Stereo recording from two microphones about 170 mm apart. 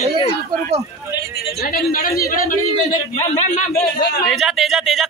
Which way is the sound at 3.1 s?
40° left (ahead or behind).